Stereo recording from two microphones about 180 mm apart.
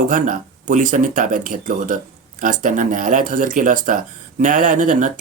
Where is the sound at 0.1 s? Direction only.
50° right (ahead or behind).